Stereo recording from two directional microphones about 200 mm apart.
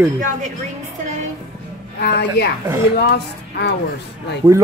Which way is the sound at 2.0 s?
55° left (ahead or behind).